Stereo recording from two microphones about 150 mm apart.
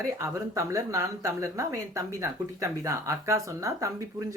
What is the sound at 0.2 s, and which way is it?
Speech, 20° right (ahead or behind).